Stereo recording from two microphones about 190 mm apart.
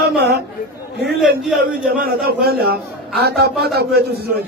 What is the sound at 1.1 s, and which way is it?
Speech, centre (ahead or behind).